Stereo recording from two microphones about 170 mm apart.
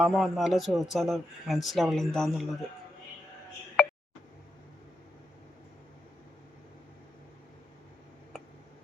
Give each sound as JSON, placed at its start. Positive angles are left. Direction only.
{"t": 0.0, "sound": "a man's voice", "side_deg": 0}